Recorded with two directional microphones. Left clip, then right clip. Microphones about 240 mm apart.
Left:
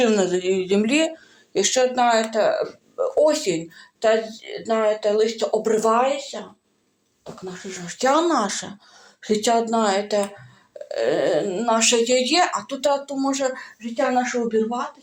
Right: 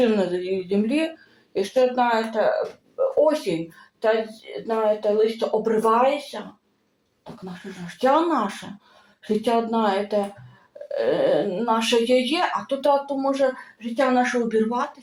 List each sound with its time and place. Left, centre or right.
0.0 s speech: left
3.0 s a sound: left
3.5 s speech: left
7.4 s speech: left